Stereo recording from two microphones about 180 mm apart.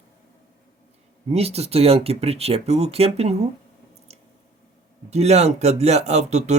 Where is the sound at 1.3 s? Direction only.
35° right (ahead or behind).